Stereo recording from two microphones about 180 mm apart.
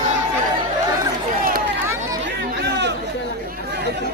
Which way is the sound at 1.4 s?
50° right (ahead or behind).